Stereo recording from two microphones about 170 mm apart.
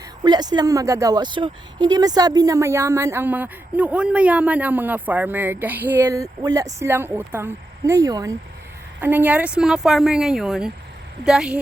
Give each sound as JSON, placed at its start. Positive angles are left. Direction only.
{"t": 0.3, "sound": "a woman's voice", "side_deg": -25}